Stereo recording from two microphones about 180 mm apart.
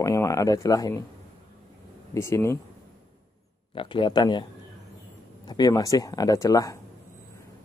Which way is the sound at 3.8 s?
25° left (ahead or behind).